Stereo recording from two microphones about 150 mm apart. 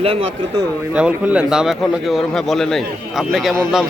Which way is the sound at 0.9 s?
10° right (ahead or behind).